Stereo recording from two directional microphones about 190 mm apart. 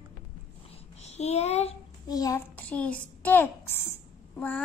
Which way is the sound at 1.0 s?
35° left (ahead or behind).